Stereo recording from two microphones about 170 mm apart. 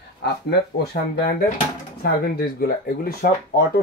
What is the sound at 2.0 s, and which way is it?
Speech, 65° left (ahead or behind).